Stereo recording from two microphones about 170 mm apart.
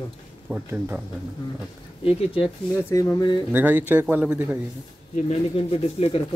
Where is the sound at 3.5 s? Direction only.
10° right (ahead or behind).